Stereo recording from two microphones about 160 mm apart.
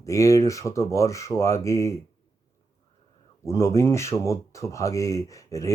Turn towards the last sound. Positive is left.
turn(degrees=20)  # may be behind; listen again after turning